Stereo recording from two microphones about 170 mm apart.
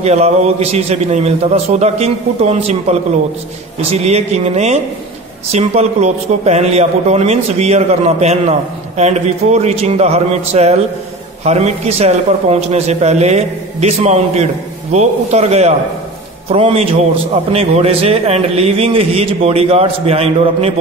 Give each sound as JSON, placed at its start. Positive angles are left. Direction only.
{"t": 0.0, "sound": "a man's voice", "side_deg": -40}